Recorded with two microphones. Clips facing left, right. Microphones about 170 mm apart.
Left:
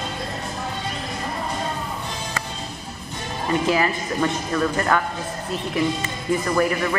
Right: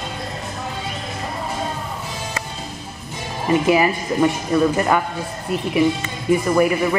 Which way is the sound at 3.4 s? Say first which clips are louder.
Right 5 dB; 15° right (ahead or behind).